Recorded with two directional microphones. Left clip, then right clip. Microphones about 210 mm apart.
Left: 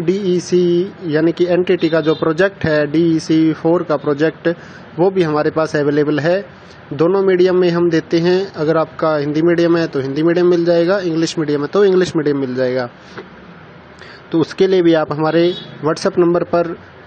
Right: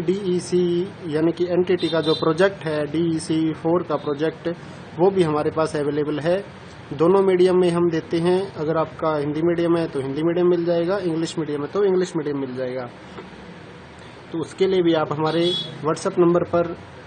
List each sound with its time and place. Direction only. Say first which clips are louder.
0.0 s speech: left 6 dB; 15° left (ahead or behind)
14.3 s a man's voice: left 7 dB; 25° left (ahead or behind)